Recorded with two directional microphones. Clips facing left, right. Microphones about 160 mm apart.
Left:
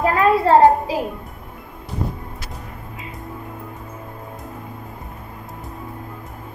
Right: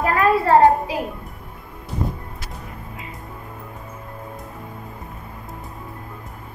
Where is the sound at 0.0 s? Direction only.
20° left (ahead or behind).